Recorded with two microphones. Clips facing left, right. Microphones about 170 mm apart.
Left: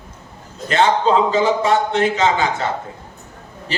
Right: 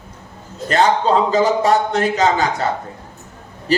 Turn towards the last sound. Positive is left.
turn(degrees=-40)  # may be behind; listen again after turning